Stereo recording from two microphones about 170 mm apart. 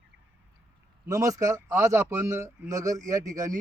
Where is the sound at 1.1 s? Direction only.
20° right (ahead or behind).